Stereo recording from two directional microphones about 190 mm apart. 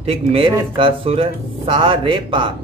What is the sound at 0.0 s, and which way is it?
Speech, 30° right (ahead or behind).